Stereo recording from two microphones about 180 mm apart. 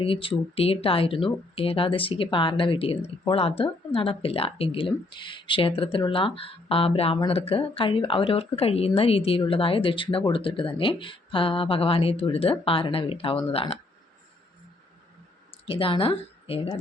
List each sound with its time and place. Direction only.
0.0 s speech: 30° left (ahead or behind)
15.6 s speech: 30° left (ahead or behind)